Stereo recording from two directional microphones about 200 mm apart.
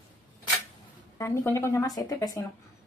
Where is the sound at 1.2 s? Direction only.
10° left (ahead or behind).